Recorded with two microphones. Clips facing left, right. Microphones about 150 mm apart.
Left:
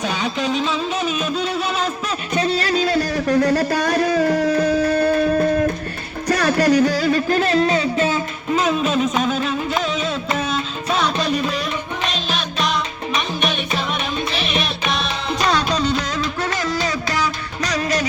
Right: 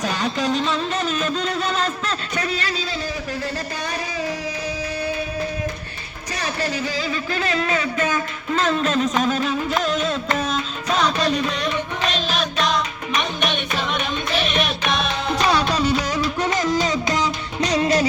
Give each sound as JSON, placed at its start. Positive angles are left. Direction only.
{"t": 0.0, "sound": "speech", "side_deg": 0}
{"t": 2.3, "sound": "a sound", "side_deg": 25}
{"t": 2.6, "sound": "music", "side_deg": 45}
{"t": 8.5, "sound": "music", "side_deg": 10}
{"t": 14.4, "sound": "music", "side_deg": 5}